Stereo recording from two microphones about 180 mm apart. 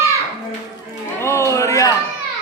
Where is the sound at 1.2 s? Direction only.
15° left (ahead or behind).